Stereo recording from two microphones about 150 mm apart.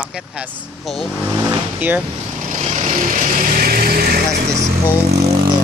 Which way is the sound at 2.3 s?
50° right (ahead or behind).